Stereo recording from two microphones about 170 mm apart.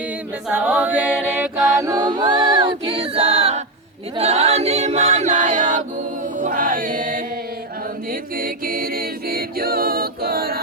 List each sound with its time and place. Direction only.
0.4 s a capella: 10° right (ahead or behind)
1.4 s a capella: 20° right (ahead or behind); by 5.8 s 45° right (ahead or behind)
6.4 s music: 50° right (ahead or behind)
8.4 s a capella: 60° right (ahead or behind)